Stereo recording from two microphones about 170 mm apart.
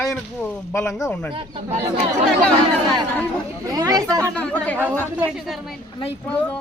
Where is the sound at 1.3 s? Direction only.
30° right (ahead or behind).